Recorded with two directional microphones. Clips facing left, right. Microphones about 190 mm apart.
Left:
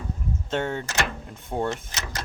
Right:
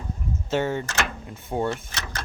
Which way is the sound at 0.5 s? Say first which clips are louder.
Right 2 dB; centre (ahead or behind).